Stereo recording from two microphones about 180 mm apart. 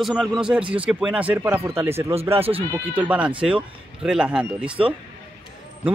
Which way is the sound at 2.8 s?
10° right (ahead or behind).